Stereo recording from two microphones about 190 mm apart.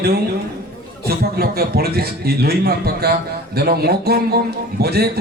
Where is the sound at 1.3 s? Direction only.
55° right (ahead or behind).